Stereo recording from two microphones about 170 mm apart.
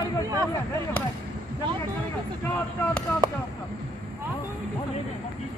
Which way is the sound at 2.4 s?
15° left (ahead or behind).